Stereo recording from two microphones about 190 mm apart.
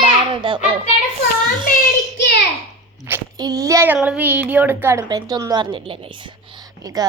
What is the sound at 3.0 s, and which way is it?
A woman's voice, 15° right (ahead or behind).